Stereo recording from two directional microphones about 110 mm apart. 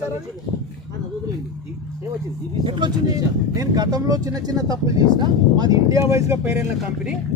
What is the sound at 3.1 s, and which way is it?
Speech, 35° right (ahead or behind).